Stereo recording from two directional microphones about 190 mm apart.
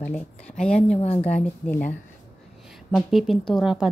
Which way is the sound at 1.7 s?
10° left (ahead or behind).